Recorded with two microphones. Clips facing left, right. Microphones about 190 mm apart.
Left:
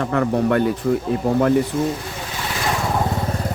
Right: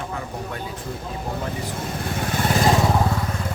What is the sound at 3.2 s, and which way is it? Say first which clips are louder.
Vehicle: left 4 dB; 35° left (ahead or behind).